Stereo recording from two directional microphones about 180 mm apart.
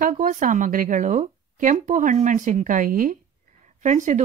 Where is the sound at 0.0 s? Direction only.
50° right (ahead or behind).